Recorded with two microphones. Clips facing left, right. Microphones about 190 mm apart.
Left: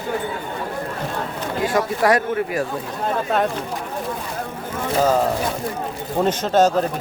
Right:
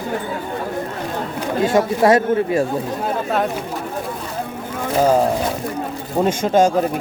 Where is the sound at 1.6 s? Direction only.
25° right (ahead or behind).